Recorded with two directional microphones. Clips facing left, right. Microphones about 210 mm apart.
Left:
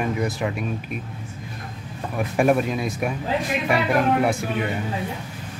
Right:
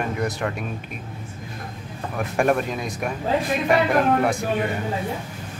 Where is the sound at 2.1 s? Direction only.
5° left (ahead or behind).